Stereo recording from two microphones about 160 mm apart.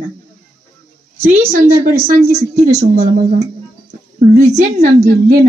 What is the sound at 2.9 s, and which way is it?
A woman's voice, 45° right (ahead or behind).